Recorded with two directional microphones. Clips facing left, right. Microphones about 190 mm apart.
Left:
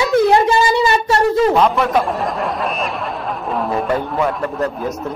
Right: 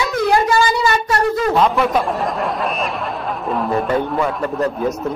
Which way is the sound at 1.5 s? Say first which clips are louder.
Left 1 dB; centre (ahead or behind).